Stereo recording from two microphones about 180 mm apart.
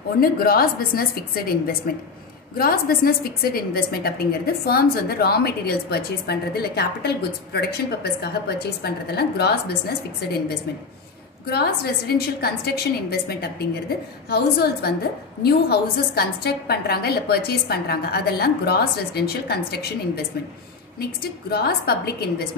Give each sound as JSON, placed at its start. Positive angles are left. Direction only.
{"t": 0.2, "sound": "a woman's voice", "side_deg": 55}
{"t": 11.5, "sound": "a woman's voice", "side_deg": 65}